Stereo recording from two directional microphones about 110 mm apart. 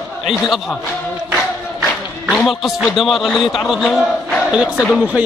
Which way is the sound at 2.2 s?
Centre (ahead or behind).